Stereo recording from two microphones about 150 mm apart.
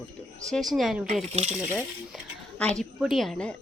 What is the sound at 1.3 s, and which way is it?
Speech, 50° right (ahead or behind).